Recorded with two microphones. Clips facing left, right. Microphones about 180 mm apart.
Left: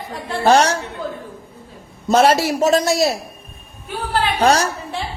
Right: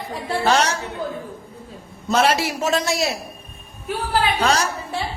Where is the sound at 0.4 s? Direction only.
45° left (ahead or behind).